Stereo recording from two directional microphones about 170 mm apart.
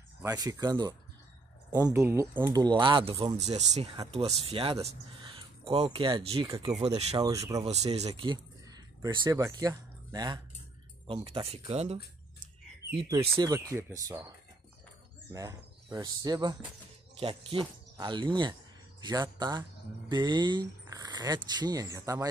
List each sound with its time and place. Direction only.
0.2 s speech: 20° right (ahead or behind)
3.3 s speech: 40° right (ahead or behind)
7.2 s speech: 20° right (ahead or behind)
7.6 s speech: 40° right (ahead or behind)
13.3 s speech: 20° right (ahead or behind)
15.3 s speech: 20° right (ahead or behind)